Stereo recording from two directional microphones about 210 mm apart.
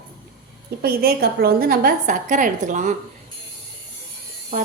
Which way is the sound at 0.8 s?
50° right (ahead or behind).